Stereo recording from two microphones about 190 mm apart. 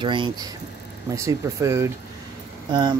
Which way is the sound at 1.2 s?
15° right (ahead or behind).